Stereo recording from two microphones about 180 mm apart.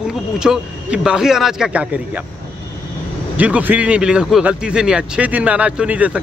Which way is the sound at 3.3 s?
10° right (ahead or behind).